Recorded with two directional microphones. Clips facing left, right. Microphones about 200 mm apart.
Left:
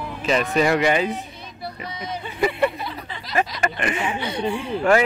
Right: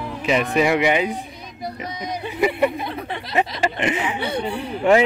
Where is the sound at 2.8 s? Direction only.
60° right (ahead or behind).